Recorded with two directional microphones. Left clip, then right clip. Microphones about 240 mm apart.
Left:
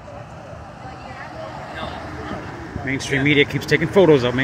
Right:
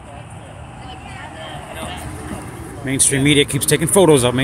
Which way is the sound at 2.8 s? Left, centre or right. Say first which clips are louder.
Right 2 dB; right.